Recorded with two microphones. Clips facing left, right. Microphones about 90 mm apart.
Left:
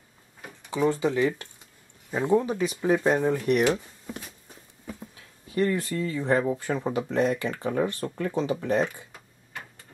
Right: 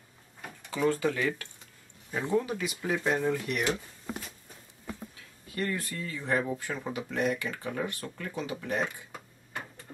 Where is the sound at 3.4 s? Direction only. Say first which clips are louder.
Left 8 dB; 45° left (ahead or behind).